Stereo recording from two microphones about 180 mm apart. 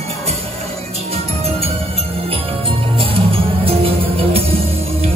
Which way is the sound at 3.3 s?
30° right (ahead or behind).